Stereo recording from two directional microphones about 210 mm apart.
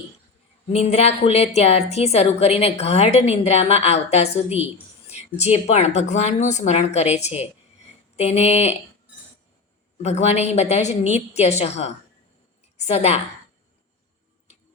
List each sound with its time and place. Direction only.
0.7 s a woman's voice: 30° left (ahead or behind)
10.0 s a woman's voice: 30° left (ahead or behind)